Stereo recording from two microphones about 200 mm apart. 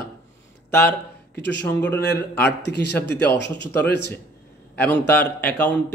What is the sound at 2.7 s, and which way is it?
Speech, 55° left (ahead or behind).